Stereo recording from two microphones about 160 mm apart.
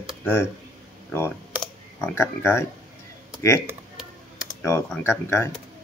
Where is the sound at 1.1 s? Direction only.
15° left (ahead or behind).